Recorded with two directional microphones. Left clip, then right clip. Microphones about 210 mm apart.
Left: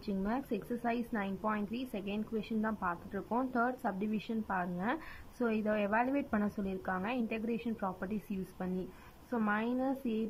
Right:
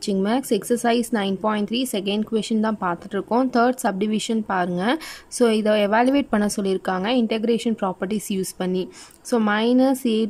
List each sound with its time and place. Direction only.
0.0 s a woman's voice: 25° right (ahead or behind)